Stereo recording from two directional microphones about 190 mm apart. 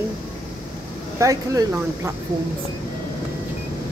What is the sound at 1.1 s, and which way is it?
Speech, 15° right (ahead or behind).